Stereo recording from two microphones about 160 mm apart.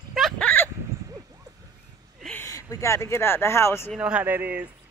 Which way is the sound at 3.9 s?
5° right (ahead or behind).